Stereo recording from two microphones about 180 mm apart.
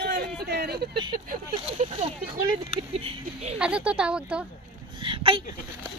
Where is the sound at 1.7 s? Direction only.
35° right (ahead or behind).